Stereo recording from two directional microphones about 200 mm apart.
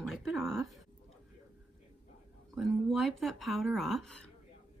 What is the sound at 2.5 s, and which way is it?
A woman's voice, centre (ahead or behind).